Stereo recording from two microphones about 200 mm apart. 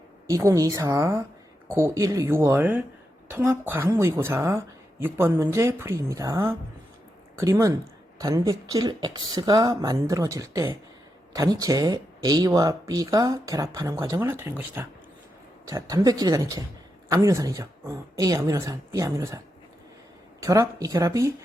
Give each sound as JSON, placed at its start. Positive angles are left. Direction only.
{"t": 0.3, "sound": "speech", "side_deg": -15}
{"t": 20.4, "sound": "speech", "side_deg": -15}